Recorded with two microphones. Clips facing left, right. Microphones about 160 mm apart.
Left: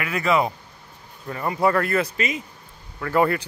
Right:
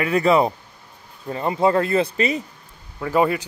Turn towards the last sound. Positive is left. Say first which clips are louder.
# right 1 dB
turn(degrees=-15)  # may be behind; listen again after turning